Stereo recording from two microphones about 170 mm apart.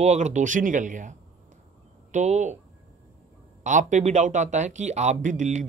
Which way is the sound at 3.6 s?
45° right (ahead or behind).